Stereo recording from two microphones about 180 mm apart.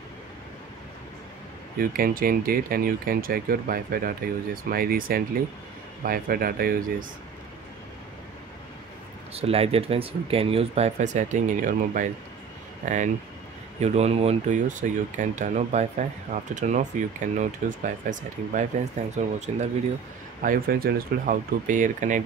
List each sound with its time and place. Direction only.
1.8 s speech: 50° right (ahead or behind)
9.3 s speech: 35° right (ahead or behind)
20.4 s speech: 55° right (ahead or behind)